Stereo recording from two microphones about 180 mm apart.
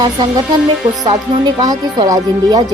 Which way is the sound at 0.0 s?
25° right (ahead or behind).